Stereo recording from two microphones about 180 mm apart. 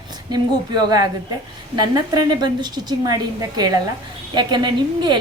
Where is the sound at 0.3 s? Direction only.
20° right (ahead or behind).